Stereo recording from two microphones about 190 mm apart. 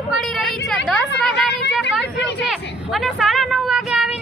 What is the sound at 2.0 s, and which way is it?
Speech, 65° left (ahead or behind).